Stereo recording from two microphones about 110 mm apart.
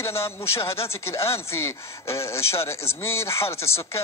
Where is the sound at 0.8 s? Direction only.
25° left (ahead or behind).